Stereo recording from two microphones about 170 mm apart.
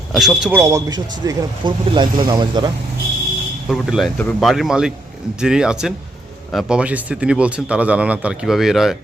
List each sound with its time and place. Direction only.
0.1 s speech: centre (ahead or behind)
0.6 s speech: 20° right (ahead or behind)
3.7 s speech: centre (ahead or behind)